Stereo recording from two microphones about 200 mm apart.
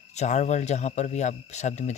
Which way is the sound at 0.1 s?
35° left (ahead or behind).